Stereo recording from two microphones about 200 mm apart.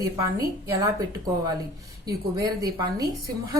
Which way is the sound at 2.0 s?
15° right (ahead or behind).